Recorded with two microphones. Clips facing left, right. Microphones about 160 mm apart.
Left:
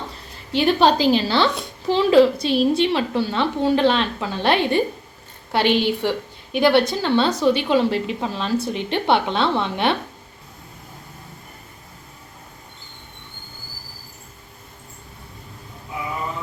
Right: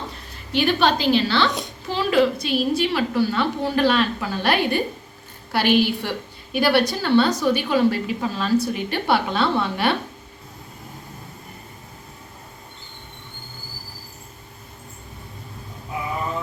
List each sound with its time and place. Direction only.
0.5 s a woman's voice: 30° left (ahead or behind)